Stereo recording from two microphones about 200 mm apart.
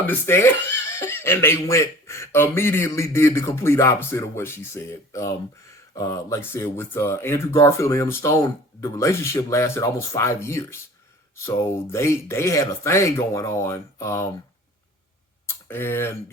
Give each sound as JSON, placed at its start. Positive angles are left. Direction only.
{"t": 0.1, "sound": "speech", "side_deg": 10}
{"t": 15.4, "sound": "speech", "side_deg": 10}